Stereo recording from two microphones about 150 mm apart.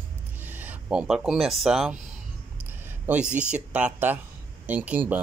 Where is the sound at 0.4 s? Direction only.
10° right (ahead or behind).